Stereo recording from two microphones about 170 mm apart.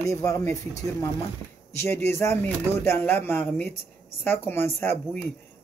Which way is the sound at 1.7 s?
15° left (ahead or behind).